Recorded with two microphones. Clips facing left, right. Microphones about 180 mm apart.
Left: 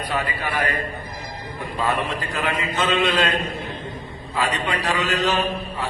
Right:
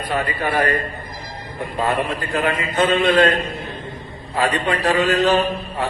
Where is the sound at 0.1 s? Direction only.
50° right (ahead or behind).